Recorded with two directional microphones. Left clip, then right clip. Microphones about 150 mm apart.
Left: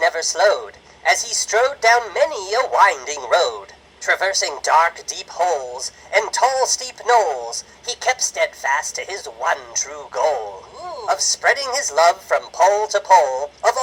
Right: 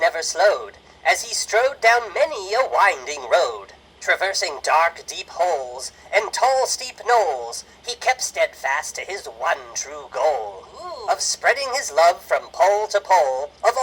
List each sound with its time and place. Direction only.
0.0 s a man's voice: 20° left (ahead or behind)